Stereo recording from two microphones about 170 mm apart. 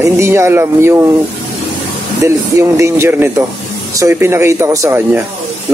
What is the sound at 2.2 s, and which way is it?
Speech, 20° right (ahead or behind).